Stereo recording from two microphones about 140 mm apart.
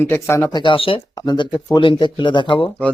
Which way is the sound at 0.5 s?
35° left (ahead or behind).